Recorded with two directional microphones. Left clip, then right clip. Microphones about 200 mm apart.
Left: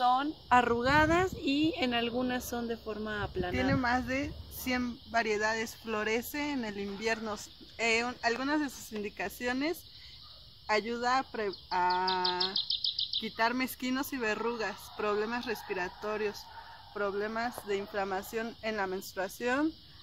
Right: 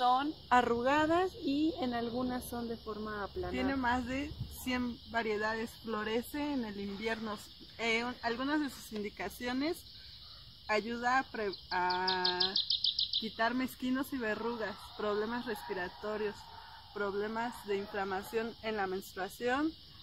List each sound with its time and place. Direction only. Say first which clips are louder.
0.0 s speech: left 2 dB; 15° left (ahead or behind)
1.4 s speech: left 3 dB; 45° left (ahead or behind)
1.8 s speech: left 5 dB; 10° left (ahead or behind)